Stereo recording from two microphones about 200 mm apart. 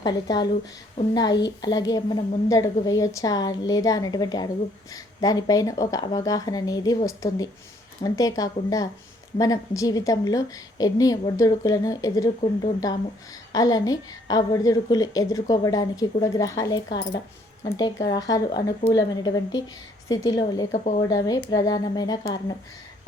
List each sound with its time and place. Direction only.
0.0 s a woman's voice: 20° left (ahead or behind)
13.5 s a woman's voice: 20° left (ahead or behind)
20.7 s speech: 35° left (ahead or behind)
21.2 s a woman's voice: 20° left (ahead or behind)